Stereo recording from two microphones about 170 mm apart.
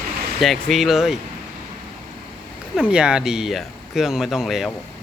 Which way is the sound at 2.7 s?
5° right (ahead or behind).